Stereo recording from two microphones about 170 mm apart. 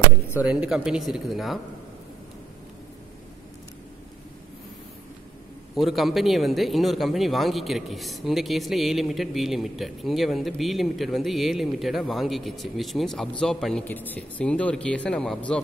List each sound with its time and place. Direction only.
0.4 s speech: 5° right (ahead or behind)
5.8 s speech: centre (ahead or behind)